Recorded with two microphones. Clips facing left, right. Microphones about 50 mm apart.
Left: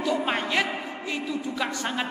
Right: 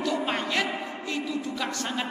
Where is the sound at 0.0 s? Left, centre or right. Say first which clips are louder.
Left 2 dB; centre.